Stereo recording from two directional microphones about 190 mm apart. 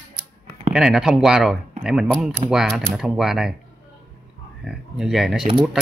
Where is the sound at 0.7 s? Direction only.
5° right (ahead or behind).